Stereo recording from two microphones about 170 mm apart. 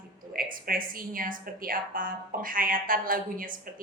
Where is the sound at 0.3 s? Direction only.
55° right (ahead or behind).